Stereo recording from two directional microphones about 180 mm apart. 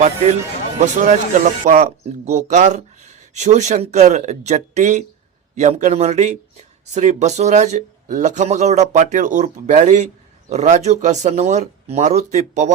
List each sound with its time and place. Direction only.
0.9 s speech: 45° right (ahead or behind)